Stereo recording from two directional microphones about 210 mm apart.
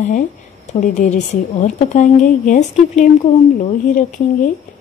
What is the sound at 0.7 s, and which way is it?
A woman's voice, 35° left (ahead or behind).